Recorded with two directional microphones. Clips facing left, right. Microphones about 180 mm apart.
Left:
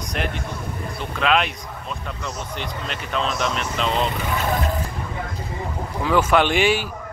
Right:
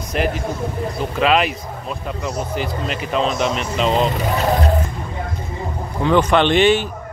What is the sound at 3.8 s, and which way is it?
Speech, 35° right (ahead or behind).